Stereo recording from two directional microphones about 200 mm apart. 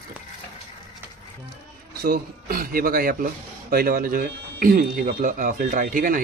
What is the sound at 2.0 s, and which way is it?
Speech, 45° right (ahead or behind).